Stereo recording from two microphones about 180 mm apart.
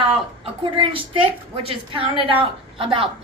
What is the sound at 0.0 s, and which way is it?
A woman's voice, 30° right (ahead or behind).